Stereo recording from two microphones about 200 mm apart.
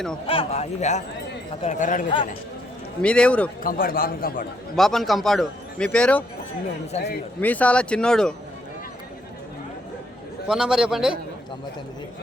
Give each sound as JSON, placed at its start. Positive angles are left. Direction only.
{"t": 0.3, "sound": "speech", "side_deg": 30}
{"t": 3.0, "sound": "a man's voice", "side_deg": 5}
{"t": 3.6, "sound": "a man's voice", "side_deg": 45}
{"t": 4.8, "sound": "a man's voice", "side_deg": 0}
{"t": 6.9, "sound": "speech", "side_deg": 30}
{"t": 7.4, "sound": "a man's voice", "side_deg": 5}
{"t": 10.5, "sound": "a man's voice", "side_deg": -5}